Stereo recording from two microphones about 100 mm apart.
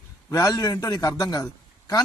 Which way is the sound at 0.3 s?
35° left (ahead or behind).